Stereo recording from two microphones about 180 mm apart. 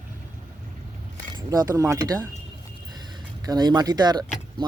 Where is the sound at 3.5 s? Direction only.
20° right (ahead or behind).